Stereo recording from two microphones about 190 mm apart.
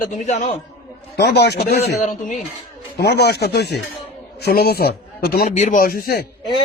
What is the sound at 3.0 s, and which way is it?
A man's voice, 60° left (ahead or behind).